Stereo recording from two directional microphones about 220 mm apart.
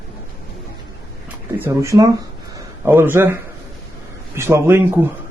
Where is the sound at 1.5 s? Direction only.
10° right (ahead or behind).